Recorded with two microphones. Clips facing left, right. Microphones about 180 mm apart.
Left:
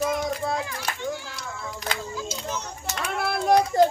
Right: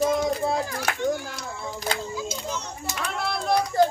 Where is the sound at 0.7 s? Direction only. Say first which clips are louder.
Right 5 dB; 45° right (ahead or behind).